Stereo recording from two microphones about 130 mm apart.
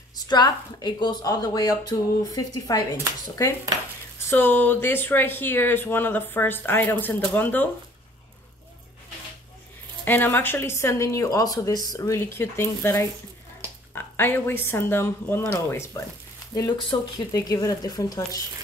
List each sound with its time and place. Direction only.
0.1 s a woman's voice: 30° left (ahead or behind)
4.3 s speech: 15° left (ahead or behind)
10.0 s speech: 15° left (ahead or behind)
16.5 s speech: 30° left (ahead or behind)